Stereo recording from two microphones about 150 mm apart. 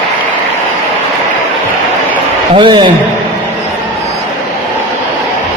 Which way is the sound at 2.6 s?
35° right (ahead or behind).